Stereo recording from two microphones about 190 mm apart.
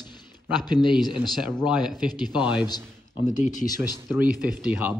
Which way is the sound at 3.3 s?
40° left (ahead or behind).